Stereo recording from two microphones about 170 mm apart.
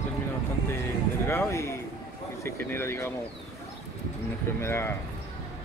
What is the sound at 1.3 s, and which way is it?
Speech, 15° left (ahead or behind).